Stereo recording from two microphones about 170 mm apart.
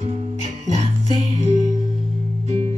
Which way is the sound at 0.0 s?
40° right (ahead or behind).